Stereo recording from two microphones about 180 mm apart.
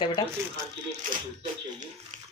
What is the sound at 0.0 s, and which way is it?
Speech, 25° left (ahead or behind).